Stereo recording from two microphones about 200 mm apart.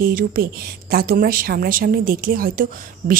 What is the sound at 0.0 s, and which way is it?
A woman's voice, 50° right (ahead or behind).